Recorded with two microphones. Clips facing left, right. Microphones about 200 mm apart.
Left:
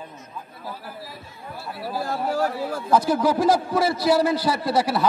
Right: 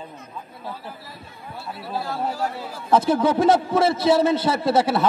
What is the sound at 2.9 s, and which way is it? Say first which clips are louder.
A man's voice: right 2 dB; 25° right (ahead or behind).